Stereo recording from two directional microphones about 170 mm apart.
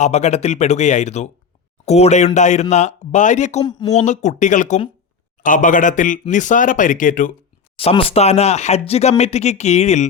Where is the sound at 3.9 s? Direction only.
40° left (ahead or behind).